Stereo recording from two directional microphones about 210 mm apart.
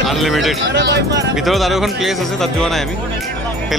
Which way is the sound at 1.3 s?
Centre (ahead or behind).